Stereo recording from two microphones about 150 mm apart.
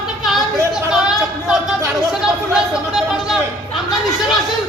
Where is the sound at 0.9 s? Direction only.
5° right (ahead or behind).